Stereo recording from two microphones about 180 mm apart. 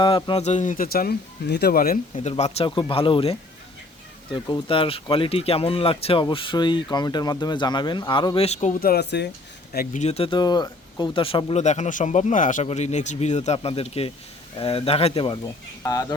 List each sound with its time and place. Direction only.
0.0 s speech: 25° left (ahead or behind); by 2.0 s 55° left (ahead or behind)
2.1 s speech: 35° left (ahead or behind)
8.4 s speech: 40° left (ahead or behind)
8.8 s speech: 60° left (ahead or behind)
9.7 s speech: 40° left (ahead or behind)
11.6 s speech: 40° left (ahead or behind); by 16.1 s 20° left (ahead or behind)